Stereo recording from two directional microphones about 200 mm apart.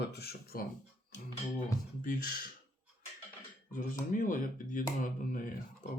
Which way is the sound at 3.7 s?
40° left (ahead or behind).